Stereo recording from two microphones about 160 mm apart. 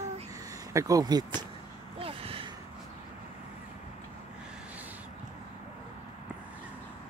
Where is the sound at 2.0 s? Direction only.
35° right (ahead or behind).